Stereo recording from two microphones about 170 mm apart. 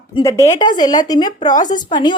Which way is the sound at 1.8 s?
25° left (ahead or behind).